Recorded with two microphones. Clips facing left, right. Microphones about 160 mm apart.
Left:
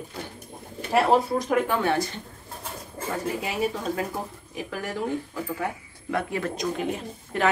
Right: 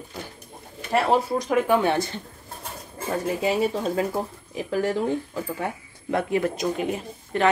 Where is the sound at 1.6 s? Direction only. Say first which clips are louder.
Right 3 dB; 20° right (ahead or behind).